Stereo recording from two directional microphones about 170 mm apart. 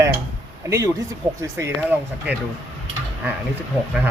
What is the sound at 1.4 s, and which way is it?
Speech, 15° right (ahead or behind).